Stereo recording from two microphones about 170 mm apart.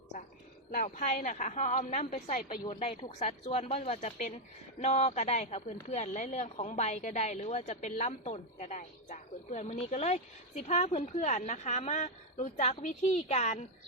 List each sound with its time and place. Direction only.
0.7 s a woman's voice: 50° left (ahead or behind)
2.7 s a woman's voice: 30° left (ahead or behind)